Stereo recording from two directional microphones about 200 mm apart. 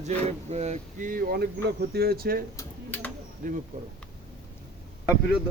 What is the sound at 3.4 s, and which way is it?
Speech, 40° right (ahead or behind).